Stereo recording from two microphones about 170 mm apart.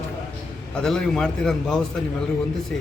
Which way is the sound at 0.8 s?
5° left (ahead or behind).